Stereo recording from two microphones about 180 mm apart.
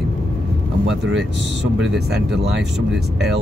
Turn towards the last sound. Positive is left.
turn(degrees=-70)  # may be behind; listen again after turning